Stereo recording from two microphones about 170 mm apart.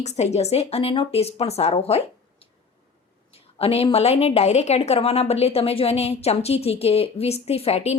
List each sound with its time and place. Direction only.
0.0 s a woman's voice: 40° left (ahead or behind)